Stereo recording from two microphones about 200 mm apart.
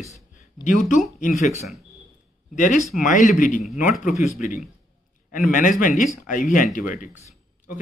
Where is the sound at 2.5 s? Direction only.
40° left (ahead or behind).